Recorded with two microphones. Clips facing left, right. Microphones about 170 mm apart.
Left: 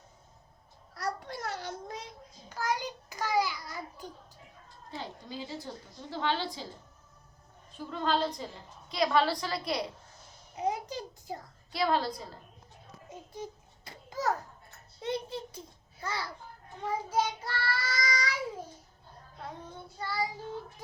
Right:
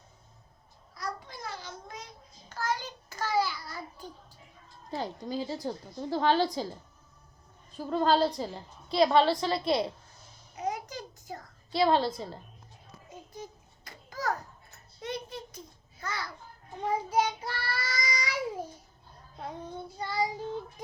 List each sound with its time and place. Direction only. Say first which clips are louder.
0.9 s babbling: left 3 dB; 70° left (ahead or behind)
2.5 s a sound: left 1 dB; 15° left (ahead or behind)
4.9 s a woman's voice: right 7 dB; 40° right (ahead or behind)
7.8 s a woman's voice: right 5 dB; 40° right (ahead or behind)
10.6 s a sound: left 2 dB; 25° left (ahead or behind)
11.7 s a woman's voice: right 4 dB; 25° right (ahead or behind)
13.8 s a sound: left 1 dB; 25° left (ahead or behind)
16.8 s child singing: right 3 dB; 15° right (ahead or behind)
20.0 s a woman's voice: right 3 dB; 20° right (ahead or behind)